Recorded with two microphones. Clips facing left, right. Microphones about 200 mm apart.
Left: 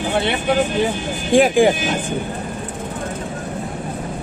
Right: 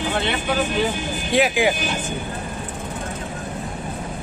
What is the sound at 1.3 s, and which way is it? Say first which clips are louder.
Speech: left 6 dB; 45° left (ahead or behind).